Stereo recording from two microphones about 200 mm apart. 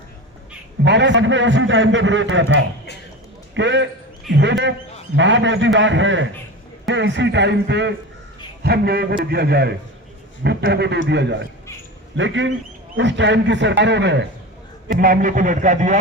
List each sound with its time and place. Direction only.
0.9 s a man's voice: 60° right (ahead or behind)
14.8 s a man's voice: 45° right (ahead or behind)